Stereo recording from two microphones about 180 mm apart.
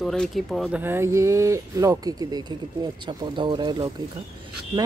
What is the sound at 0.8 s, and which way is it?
Speech, 15° right (ahead or behind).